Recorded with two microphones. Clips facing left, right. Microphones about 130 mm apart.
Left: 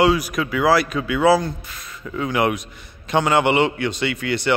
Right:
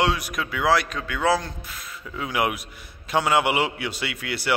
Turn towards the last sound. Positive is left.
turn(degrees=-5)  # may be behind; listen again after turning